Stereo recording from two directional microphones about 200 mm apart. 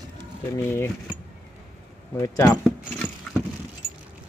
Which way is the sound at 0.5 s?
15° left (ahead or behind).